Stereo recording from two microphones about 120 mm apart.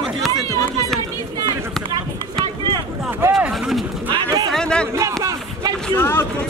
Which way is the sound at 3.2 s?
15° right (ahead or behind).